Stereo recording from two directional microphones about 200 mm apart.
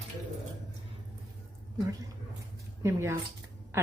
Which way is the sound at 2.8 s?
15° right (ahead or behind).